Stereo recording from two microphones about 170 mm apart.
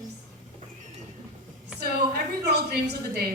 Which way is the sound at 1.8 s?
70° right (ahead or behind).